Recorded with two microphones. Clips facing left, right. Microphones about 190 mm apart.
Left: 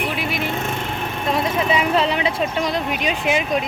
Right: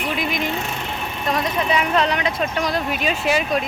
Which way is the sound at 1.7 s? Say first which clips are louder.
Even; 30° left (ahead or behind).